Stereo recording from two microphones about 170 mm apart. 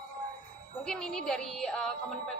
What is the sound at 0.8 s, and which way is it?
A woman's voice, 5° left (ahead or behind).